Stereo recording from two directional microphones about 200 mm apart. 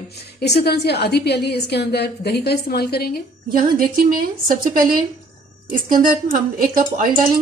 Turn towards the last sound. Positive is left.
turn(degrees=-45)  # may be behind; listen again after turning